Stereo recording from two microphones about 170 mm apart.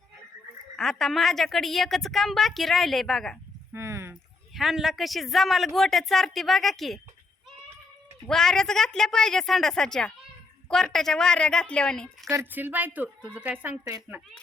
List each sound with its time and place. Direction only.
0.8 s a woman's voice: centre (ahead or behind)
3.7 s horse: 15° right (ahead or behind)
4.5 s a woman's voice: centre (ahead or behind)
8.3 s a woman's voice: 5° left (ahead or behind)
12.3 s speech: 15° right (ahead or behind)